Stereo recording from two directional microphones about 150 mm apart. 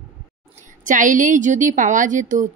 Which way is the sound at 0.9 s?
60° right (ahead or behind).